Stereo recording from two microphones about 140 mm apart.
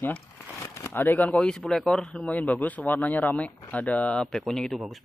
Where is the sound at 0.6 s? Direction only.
20° left (ahead or behind).